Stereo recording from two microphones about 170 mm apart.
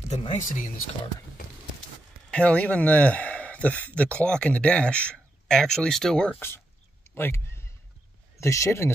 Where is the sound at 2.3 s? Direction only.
5° left (ahead or behind).